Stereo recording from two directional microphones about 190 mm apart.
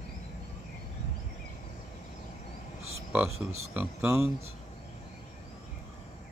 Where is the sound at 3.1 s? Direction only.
10° right (ahead or behind).